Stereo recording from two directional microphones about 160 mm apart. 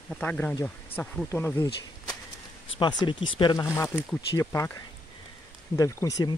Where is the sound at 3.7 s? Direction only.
15° left (ahead or behind).